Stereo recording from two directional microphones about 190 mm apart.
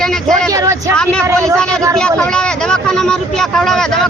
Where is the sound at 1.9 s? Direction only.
5° left (ahead or behind).